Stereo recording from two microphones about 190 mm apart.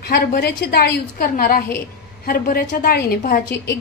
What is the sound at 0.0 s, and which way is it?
A woman's voice, 55° left (ahead or behind).